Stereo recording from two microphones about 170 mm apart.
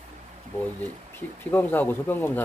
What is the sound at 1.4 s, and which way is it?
Speech, 10° left (ahead or behind).